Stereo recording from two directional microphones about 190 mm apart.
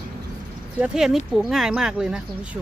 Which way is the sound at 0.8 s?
5° right (ahead or behind).